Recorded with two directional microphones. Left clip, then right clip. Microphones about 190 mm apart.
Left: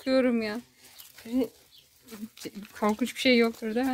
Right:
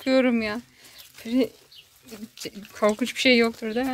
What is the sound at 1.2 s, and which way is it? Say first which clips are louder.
Speech: right 5 dB; 15° right (ahead or behind).